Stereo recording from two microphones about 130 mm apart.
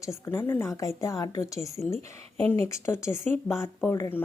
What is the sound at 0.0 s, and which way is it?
A woman's voice, 20° left (ahead or behind).